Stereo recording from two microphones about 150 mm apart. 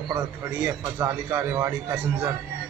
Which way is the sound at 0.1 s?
20° right (ahead or behind).